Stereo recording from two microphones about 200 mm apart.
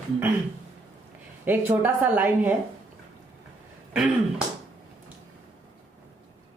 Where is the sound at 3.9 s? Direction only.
5° right (ahead or behind).